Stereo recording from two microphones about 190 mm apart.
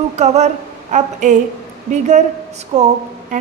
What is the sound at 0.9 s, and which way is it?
Speech, 40° right (ahead or behind).